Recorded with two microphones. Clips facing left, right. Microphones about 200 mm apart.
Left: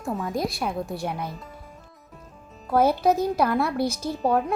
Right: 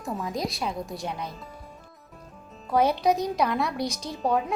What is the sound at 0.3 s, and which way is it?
Speech, 55° left (ahead or behind).